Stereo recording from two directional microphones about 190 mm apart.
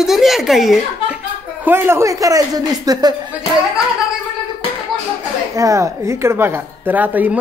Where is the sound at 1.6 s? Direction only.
10° right (ahead or behind).